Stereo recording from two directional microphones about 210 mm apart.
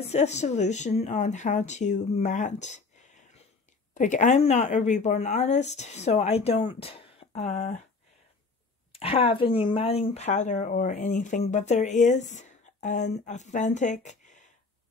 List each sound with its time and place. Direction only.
0.0 s speech: 30° left (ahead or behind)
8.9 s speech: 25° left (ahead or behind)